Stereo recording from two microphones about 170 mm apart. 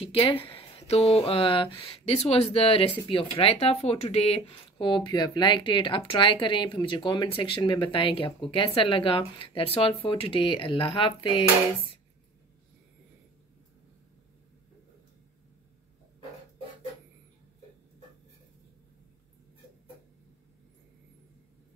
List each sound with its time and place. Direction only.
0.0 s speech: 30° left (ahead or behind)